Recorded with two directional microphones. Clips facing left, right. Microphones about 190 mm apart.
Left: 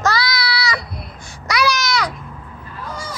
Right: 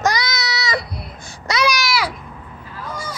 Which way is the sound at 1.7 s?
5° right (ahead or behind).